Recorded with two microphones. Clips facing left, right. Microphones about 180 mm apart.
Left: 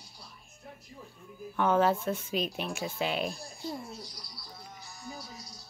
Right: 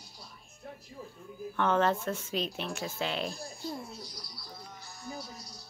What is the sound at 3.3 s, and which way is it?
A woman's voice, centre (ahead or behind).